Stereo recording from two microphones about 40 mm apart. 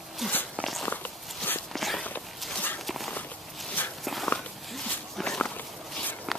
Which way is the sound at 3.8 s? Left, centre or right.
Left.